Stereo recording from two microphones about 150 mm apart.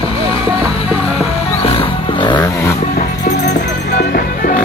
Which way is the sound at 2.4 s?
20° left (ahead or behind).